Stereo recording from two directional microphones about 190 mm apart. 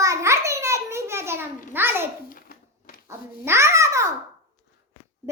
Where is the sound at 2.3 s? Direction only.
50° left (ahead or behind).